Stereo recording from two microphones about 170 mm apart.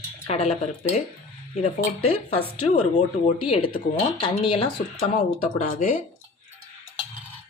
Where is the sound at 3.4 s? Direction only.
30° left (ahead or behind).